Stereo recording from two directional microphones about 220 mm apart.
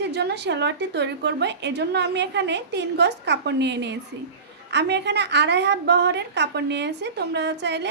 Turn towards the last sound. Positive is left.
turn(degrees=-50)  # may be behind; listen again after turning